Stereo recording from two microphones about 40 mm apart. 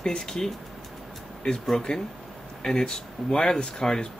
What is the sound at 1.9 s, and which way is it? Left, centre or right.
Speech, left.